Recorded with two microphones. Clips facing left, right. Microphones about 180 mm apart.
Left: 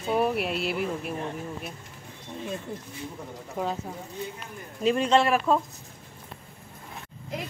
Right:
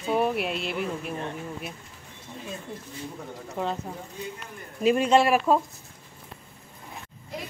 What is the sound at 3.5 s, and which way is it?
Speech, centre (ahead or behind).